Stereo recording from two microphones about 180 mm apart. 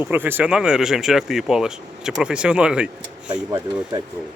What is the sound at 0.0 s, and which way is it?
Speech, 10° right (ahead or behind).